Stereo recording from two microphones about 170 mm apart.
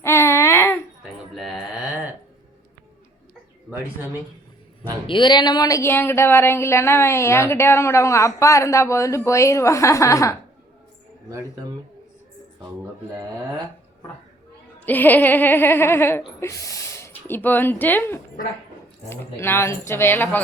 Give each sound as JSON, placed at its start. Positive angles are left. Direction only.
{"t": 0.0, "sound": "a sound", "side_deg": 15}
{"t": 1.4, "sound": "mantra", "side_deg": 0}
{"t": 5.0, "sound": "speech", "side_deg": 30}
{"t": 14.8, "sound": "speech", "side_deg": 10}